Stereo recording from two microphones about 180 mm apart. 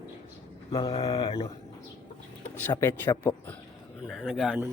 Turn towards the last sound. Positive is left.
turn(degrees=0)  # may be behind; listen again after turning